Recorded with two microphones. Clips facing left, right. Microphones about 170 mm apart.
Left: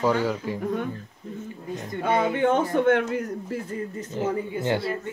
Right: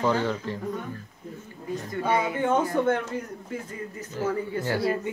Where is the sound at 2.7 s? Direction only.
70° left (ahead or behind).